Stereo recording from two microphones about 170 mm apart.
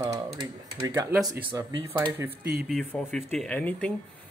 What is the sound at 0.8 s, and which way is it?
Speech, 20° right (ahead or behind).